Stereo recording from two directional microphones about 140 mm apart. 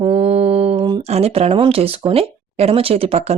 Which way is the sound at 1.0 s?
50° right (ahead or behind).